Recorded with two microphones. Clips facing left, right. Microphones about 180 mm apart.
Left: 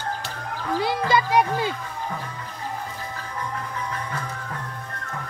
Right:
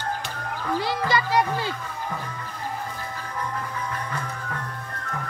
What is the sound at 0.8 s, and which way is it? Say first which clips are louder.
Music: left 4 dB; 15° left (ahead or behind).